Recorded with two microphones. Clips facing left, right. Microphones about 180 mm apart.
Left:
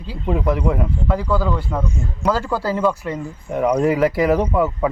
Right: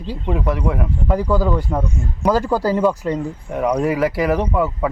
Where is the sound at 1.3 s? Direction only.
15° right (ahead or behind).